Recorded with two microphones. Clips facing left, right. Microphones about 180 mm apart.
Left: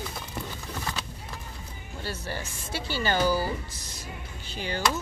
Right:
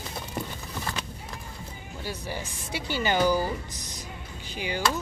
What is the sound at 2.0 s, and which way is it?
Speech, 15° right (ahead or behind).